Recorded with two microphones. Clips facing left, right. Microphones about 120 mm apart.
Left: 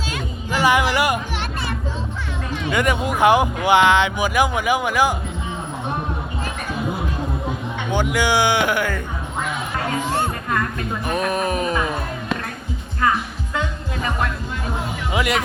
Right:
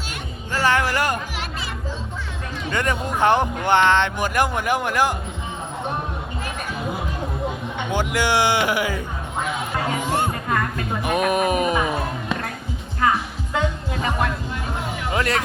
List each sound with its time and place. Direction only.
0.5 s music: 15° left (ahead or behind)
2.7 s speech: 10° left (ahead or behind)
7.9 s speech: centre (ahead or behind)
10.0 s music: 15° right (ahead or behind)
13.5 s music: 25° right (ahead or behind)
15.1 s speech: 10° left (ahead or behind)